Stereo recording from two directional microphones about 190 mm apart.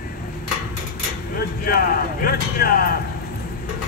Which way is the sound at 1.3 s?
50° left (ahead or behind).